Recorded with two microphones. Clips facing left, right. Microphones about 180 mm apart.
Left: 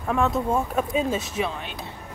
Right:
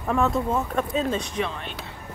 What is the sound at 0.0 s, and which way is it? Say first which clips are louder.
Speech: even; centre (ahead or behind).